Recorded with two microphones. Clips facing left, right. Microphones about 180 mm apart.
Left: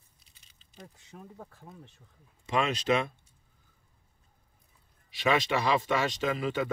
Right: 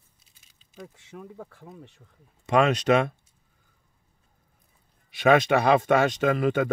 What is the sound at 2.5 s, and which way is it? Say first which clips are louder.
Speech: right 7 dB; 65° right (ahead or behind).